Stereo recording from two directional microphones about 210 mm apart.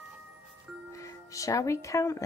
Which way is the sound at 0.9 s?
15° left (ahead or behind).